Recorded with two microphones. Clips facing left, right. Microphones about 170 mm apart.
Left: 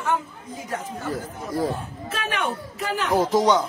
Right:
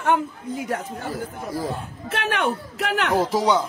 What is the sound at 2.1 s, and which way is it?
Speech, 65° right (ahead or behind).